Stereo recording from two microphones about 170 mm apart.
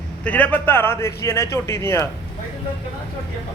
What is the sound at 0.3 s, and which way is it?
A man's voice, 10° left (ahead or behind).